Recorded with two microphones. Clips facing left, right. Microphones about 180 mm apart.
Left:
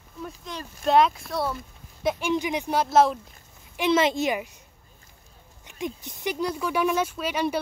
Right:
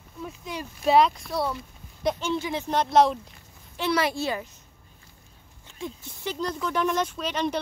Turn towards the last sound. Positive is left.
turn(degrees=10)  # may be behind; listen again after turning